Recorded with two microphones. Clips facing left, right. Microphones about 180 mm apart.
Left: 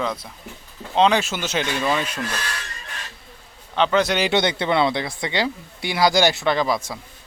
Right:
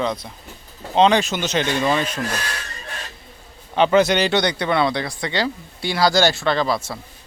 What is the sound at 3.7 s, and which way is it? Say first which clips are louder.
Speech: right 4 dB; 5° right (ahead or behind).